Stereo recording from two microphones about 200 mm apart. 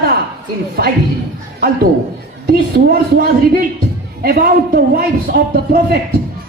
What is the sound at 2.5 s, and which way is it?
A man's voice, 50° right (ahead or behind).